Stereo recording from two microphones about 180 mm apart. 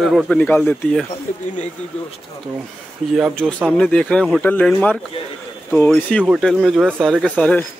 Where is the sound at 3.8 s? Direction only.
5° left (ahead or behind).